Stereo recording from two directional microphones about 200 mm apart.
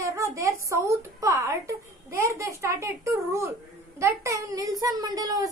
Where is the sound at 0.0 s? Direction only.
15° right (ahead or behind).